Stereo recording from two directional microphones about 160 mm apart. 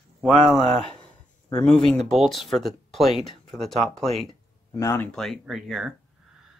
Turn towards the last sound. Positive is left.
turn(degrees=0)  # may be behind; listen again after turning